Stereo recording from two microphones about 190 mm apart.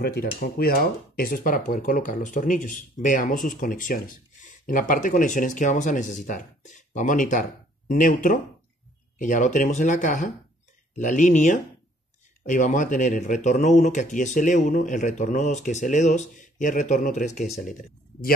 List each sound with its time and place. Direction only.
0.0 s speech: 55° left (ahead or behind)